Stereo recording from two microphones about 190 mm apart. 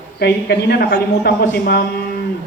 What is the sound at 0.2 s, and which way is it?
Speech, 55° left (ahead or behind).